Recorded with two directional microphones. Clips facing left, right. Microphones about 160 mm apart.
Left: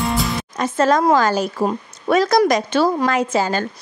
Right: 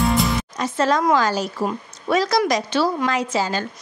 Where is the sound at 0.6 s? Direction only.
50° left (ahead or behind).